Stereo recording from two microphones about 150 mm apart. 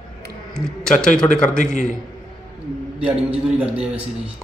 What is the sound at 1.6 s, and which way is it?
Speech, 55° left (ahead or behind).